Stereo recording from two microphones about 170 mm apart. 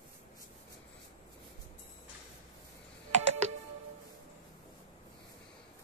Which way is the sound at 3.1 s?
40° right (ahead or behind).